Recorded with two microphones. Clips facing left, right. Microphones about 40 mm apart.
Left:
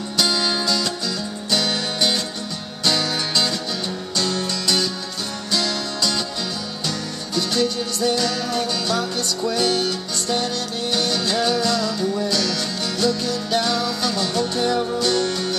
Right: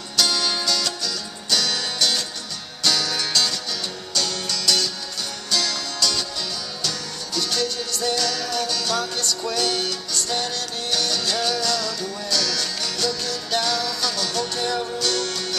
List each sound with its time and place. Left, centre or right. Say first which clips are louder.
0.2 s music: left 1 dB; centre
7.3 s music: left 4 dB; centre